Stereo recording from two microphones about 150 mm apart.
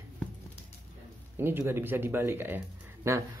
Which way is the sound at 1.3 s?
15° right (ahead or behind).